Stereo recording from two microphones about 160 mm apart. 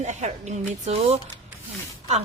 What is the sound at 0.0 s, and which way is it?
A woman's voice, 45° right (ahead or behind).